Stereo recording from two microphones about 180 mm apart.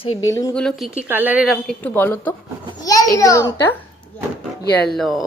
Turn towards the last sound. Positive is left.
turn(degrees=0)  # may be behind; listen again after turning